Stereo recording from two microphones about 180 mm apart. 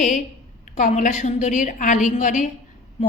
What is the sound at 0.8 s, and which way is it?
A woman's voice, 45° left (ahead or behind).